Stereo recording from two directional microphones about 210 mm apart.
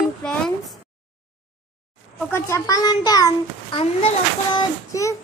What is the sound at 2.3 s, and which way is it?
A child's voice, 15° left (ahead or behind).